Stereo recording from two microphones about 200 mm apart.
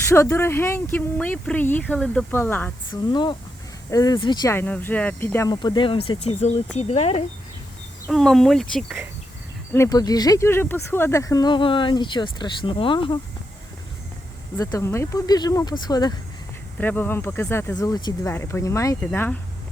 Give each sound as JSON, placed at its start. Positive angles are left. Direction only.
{"t": 0.1, "sound": "speech", "side_deg": 15}
{"t": 2.9, "sound": "speech", "side_deg": 20}
{"t": 5.5, "sound": "speech", "side_deg": 20}
{"t": 8.1, "sound": "speech", "side_deg": 0}
{"t": 9.7, "sound": "speech", "side_deg": 15}
{"t": 14.6, "sound": "speech", "side_deg": 15}
{"t": 16.7, "sound": "speech", "side_deg": 10}